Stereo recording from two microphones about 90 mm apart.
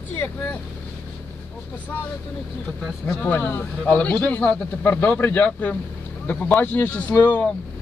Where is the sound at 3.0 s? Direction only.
20° left (ahead or behind).